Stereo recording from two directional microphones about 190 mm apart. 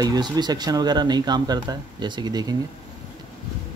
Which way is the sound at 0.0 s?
20° right (ahead or behind).